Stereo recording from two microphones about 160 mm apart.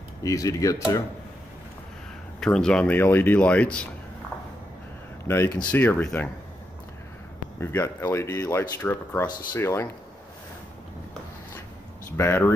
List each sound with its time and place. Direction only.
0.2 s speech: 20° left (ahead or behind)
2.4 s speech: 5° left (ahead or behind)
5.2 s speech: 15° left (ahead or behind)
7.6 s speech: 15° left (ahead or behind)
12.2 s speech: 15° left (ahead or behind)